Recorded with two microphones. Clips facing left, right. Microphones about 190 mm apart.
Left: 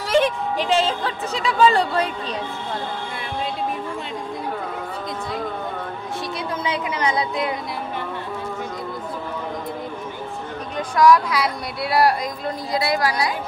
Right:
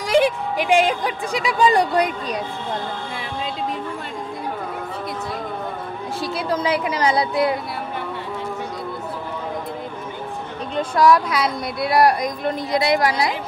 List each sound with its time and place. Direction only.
0.0 s speech: 15° right (ahead or behind)
6.2 s a sound: 30° right (ahead or behind)
10.8 s speech: 25° right (ahead or behind)